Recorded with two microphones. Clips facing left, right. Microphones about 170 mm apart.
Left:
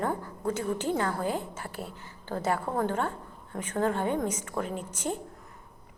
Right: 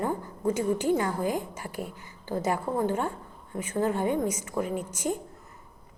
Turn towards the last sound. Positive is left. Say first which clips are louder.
# right 3 dB
turn(degrees=-10)  # may be behind; listen again after turning